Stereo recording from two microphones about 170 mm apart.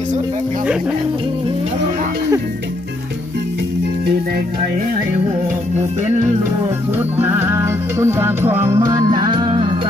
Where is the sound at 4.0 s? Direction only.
60° right (ahead or behind).